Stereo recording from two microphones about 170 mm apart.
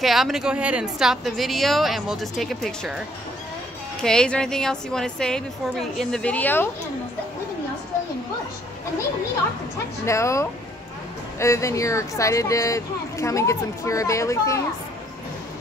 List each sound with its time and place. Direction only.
0.0 s a woman's voice: centre (ahead or behind)
4.0 s a woman's voice: 5° left (ahead or behind)
10.0 s speech: 15° left (ahead or behind)